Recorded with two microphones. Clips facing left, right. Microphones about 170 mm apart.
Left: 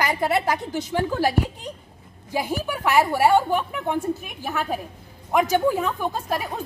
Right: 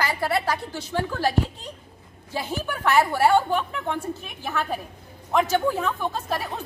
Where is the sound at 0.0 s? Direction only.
20° left (ahead or behind).